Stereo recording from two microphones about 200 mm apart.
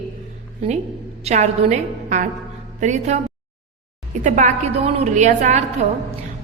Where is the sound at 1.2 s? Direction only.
35° right (ahead or behind).